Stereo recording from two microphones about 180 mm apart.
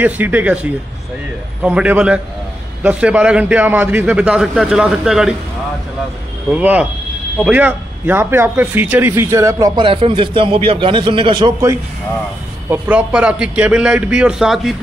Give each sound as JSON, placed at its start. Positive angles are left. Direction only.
{"t": 0.0, "sound": "a man's voice", "side_deg": -10}
{"t": 6.5, "sound": "a man's voice", "side_deg": -10}
{"t": 12.6, "sound": "a man's voice", "side_deg": -10}